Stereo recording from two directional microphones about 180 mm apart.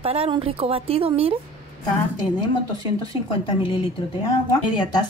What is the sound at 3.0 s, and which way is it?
Speech, 30° left (ahead or behind).